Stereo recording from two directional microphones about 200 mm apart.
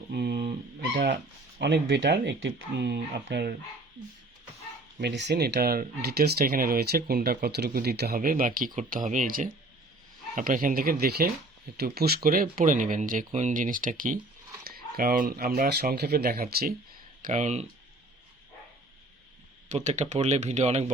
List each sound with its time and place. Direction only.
0.1 s dog: 55° right (ahead or behind)
0.9 s speech: 55° right (ahead or behind)
4.9 s speech: 60° right (ahead or behind)
17.2 s speech: 35° right (ahead or behind)
19.6 s speech: 35° right (ahead or behind)